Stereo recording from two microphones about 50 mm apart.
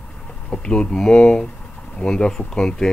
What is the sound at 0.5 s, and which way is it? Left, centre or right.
Speech, centre.